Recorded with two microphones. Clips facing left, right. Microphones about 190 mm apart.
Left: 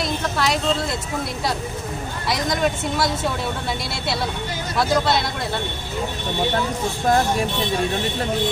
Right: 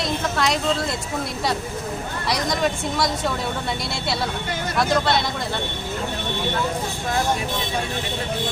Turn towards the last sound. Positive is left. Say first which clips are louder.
# left 6 dB
turn(degrees=45)  # may be behind; listen again after turning